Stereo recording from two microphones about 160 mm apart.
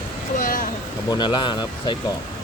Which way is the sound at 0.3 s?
55° left (ahead or behind).